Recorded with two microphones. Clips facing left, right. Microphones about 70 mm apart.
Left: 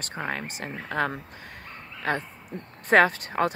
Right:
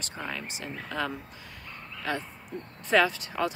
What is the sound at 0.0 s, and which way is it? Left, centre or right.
Speech, left.